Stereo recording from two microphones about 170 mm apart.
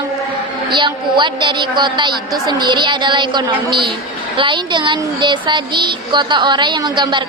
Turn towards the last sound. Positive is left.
turn(degrees=-25)  # may be behind; listen again after turning